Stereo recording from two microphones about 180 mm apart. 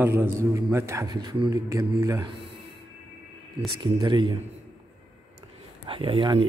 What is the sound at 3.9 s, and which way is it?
Speech, 25° right (ahead or behind).